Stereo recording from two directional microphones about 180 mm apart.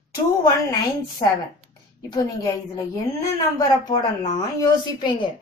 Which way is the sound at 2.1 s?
20° left (ahead or behind).